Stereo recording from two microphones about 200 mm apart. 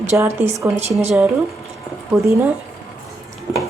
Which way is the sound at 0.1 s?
10° right (ahead or behind).